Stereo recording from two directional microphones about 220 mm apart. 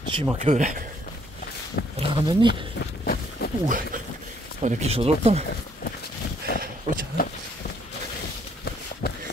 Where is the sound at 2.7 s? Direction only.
45° left (ahead or behind).